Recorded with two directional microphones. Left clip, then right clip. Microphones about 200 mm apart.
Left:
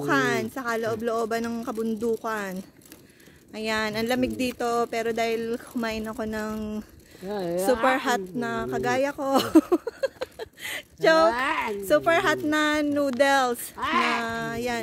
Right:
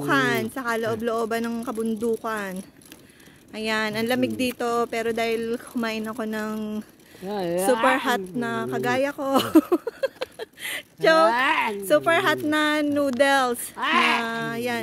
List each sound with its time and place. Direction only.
0.0 s a woman's voice: 10° right (ahead or behind)
7.2 s speech: 45° right (ahead or behind)
7.8 s speech: 5° right (ahead or behind)
11.2 s speech: 45° right (ahead or behind)
11.9 s speech: centre (ahead or behind)
13.7 s speech: 45° right (ahead or behind)
14.2 s speech: 5° right (ahead or behind)